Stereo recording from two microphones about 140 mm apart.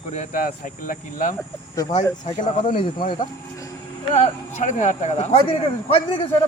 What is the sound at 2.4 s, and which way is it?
Speech, 65° left (ahead or behind).